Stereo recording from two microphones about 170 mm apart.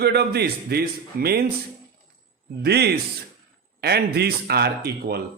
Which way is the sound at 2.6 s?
70° right (ahead or behind).